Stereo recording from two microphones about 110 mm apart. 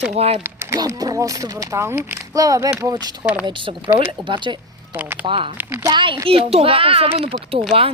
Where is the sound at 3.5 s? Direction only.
50° right (ahead or behind).